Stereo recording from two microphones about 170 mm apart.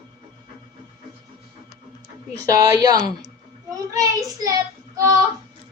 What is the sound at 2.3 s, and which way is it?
A man's voice, 20° right (ahead or behind).